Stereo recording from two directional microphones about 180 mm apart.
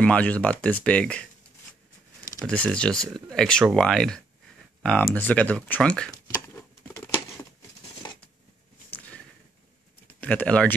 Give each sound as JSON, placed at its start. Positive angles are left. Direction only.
{"t": 0.0, "sound": "speech", "side_deg": 10}
{"t": 2.4, "sound": "speech", "side_deg": 5}
{"t": 6.3, "sound": "patter", "side_deg": 15}
{"t": 8.9, "sound": "a sound", "side_deg": 10}
{"t": 10.0, "sound": "speech", "side_deg": 5}